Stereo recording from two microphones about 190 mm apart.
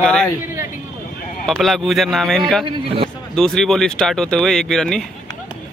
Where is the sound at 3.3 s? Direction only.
5° left (ahead or behind).